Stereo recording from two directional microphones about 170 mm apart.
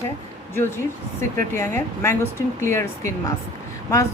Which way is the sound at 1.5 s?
15° left (ahead or behind).